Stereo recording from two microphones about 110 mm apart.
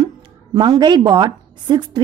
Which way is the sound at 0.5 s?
45° right (ahead or behind).